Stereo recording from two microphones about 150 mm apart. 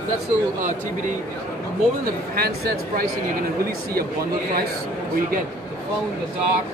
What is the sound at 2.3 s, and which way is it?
Speech, 85° right.